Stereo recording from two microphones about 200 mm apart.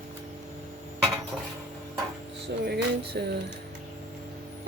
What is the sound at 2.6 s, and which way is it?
Speech, 55° right (ahead or behind).